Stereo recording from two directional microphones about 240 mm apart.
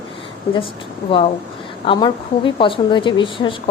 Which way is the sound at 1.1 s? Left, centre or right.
Left.